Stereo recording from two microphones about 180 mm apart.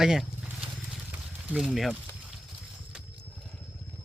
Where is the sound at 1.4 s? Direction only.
Centre (ahead or behind).